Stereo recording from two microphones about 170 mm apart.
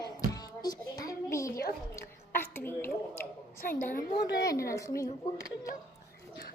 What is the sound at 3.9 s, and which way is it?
Speech, 70° left (ahead or behind).